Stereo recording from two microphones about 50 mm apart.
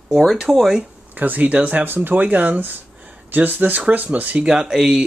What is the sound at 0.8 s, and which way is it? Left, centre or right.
Speech, right.